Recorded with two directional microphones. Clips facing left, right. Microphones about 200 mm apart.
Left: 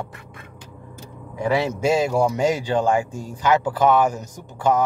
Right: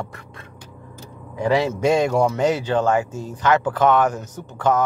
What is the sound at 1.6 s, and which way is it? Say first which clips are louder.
Speech: right 2 dB; 5° left (ahead or behind).